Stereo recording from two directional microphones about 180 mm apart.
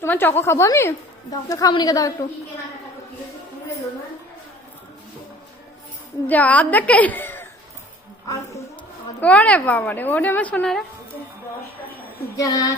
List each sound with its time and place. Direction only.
0.0 s a woman's voice: 10° left (ahead or behind)
6.2 s a woman's voice: 10° left (ahead or behind)
9.2 s a woman's voice: 5° left (ahead or behind)
12.4 s speech: 20° left (ahead or behind)